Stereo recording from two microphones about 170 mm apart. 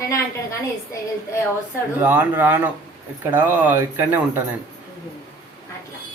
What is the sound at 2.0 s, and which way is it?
Speech, 10° right (ahead or behind).